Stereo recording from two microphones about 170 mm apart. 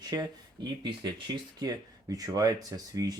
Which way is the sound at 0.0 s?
25° right (ahead or behind).